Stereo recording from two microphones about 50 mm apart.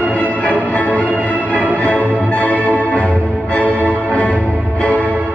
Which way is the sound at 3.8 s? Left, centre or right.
Right.